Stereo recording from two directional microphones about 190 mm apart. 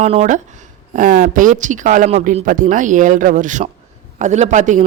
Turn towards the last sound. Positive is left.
turn(degrees=-40)  # may be behind; listen again after turning